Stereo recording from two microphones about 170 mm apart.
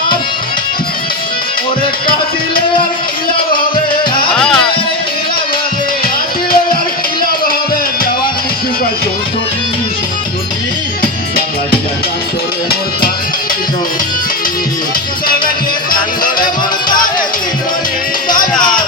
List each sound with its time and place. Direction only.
4.4 s music: 5° left (ahead or behind)
15.4 s music: 55° left (ahead or behind)